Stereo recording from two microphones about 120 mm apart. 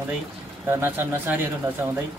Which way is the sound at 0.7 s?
20° right (ahead or behind).